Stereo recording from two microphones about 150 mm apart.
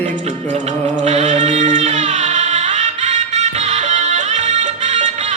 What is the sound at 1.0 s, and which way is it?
Music, 50° right (ahead or behind).